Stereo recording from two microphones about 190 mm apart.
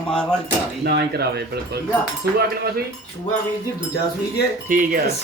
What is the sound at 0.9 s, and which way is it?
Speech, 60° right (ahead or behind).